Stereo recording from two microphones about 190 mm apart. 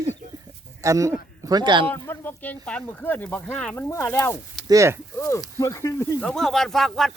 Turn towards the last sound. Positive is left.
turn(degrees=0)  # may be behind; listen again after turning